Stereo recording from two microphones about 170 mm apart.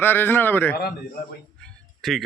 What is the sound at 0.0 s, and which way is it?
Speech, 10° left (ahead or behind).